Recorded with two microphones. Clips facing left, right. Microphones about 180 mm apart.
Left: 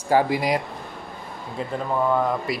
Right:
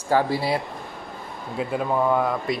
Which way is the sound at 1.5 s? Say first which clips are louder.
Right 2 dB; 5° right (ahead or behind).